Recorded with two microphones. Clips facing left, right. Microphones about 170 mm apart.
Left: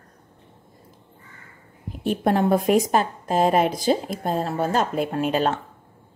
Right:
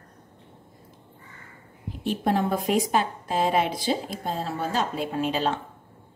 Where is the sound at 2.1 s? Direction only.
55° left (ahead or behind).